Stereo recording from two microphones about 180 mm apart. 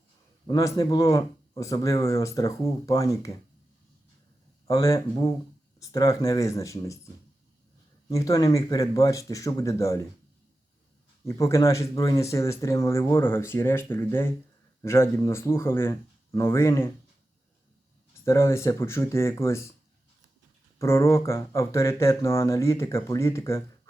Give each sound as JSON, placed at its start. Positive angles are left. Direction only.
{"t": 0.4, "sound": "speech", "side_deg": 20}
{"t": 4.6, "sound": "speech", "side_deg": 20}
{"t": 8.1, "sound": "speech", "side_deg": 20}
{"t": 11.3, "sound": "speech", "side_deg": 15}
{"t": 18.3, "sound": "speech", "side_deg": 15}
{"t": 20.7, "sound": "speech", "side_deg": 15}